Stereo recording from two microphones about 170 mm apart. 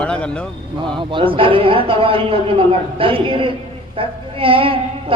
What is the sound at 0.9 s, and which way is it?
A man's voice, 30° right (ahead or behind).